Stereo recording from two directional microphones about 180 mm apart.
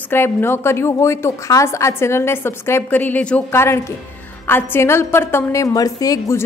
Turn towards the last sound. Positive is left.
turn(degrees=20)  # may be behind; listen again after turning